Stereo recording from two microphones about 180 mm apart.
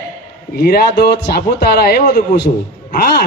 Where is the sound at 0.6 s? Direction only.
50° left (ahead or behind).